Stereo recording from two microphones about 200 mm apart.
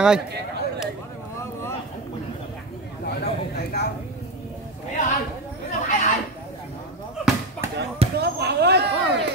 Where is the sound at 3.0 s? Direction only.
50° left (ahead or behind).